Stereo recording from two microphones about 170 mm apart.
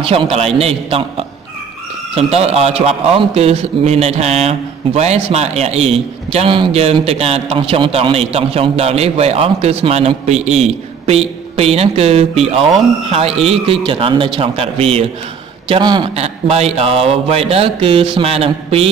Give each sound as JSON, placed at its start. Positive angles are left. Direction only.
{"t": 0.0, "sound": "a man's voice", "side_deg": -35}
{"t": 16.2, "sound": "a man's voice", "side_deg": -40}